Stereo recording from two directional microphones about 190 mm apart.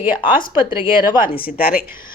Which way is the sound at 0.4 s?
25° left (ahead or behind).